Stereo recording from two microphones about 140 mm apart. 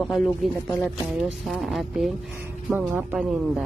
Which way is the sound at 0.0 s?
5° left (ahead or behind).